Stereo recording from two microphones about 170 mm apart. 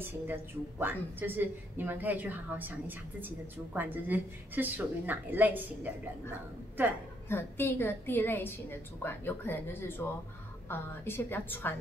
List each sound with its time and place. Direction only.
0.0 s speech: 10° right (ahead or behind)
6.8 s speech: 10° right (ahead or behind)
7.2 s a woman's voice: 15° left (ahead or behind)